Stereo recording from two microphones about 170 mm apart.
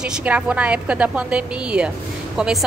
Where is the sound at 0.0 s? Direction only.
5° right (ahead or behind).